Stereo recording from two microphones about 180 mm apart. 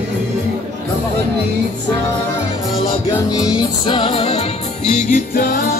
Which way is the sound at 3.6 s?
25° left (ahead or behind).